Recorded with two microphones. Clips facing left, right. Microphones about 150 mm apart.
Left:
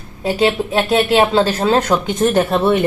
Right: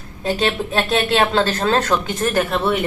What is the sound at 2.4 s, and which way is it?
Speech, 30° left (ahead or behind).